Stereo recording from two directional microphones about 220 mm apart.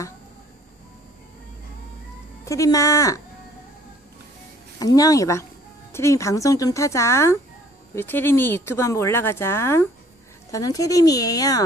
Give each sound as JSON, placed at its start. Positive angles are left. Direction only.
{"t": 2.4, "sound": "speech", "side_deg": 15}
{"t": 4.7, "sound": "speech", "side_deg": 15}